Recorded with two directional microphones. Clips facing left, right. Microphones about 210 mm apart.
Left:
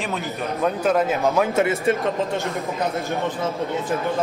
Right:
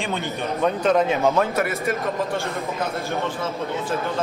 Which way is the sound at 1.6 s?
30° left (ahead or behind).